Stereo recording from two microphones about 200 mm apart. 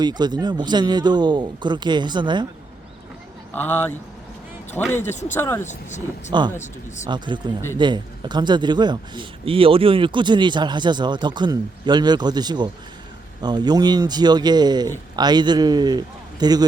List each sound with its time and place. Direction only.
0.0 s a man's voice: 20° right (ahead or behind)
3.5 s speech: 10° left (ahead or behind)
5.6 s speech: 35° left (ahead or behind)
7.1 s a man's voice: 20° right (ahead or behind)